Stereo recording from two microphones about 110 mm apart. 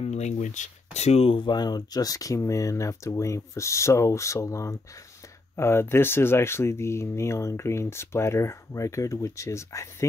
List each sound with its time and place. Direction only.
0.0 s speech: 90° left; by 10.0 s 25° left (ahead or behind)